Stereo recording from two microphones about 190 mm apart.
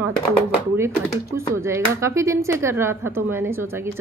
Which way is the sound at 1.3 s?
15° right (ahead or behind).